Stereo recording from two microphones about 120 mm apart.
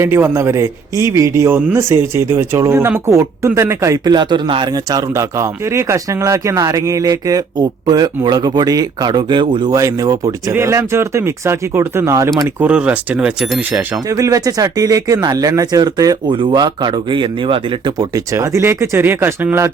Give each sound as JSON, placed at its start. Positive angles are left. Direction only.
{"t": 0.0, "sound": "speech", "side_deg": -20}
{"t": 9.7, "sound": "speech", "side_deg": -30}
{"t": 12.5, "sound": "speech", "side_deg": -10}
{"t": 13.6, "sound": "speech", "side_deg": -15}
{"t": 14.1, "sound": "speech", "side_deg": -30}
{"t": 16.3, "sound": "speech", "side_deg": -45}
{"t": 17.9, "sound": "speech", "side_deg": -30}